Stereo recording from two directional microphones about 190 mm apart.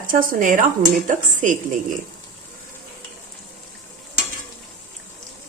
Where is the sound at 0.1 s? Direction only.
45° right (ahead or behind).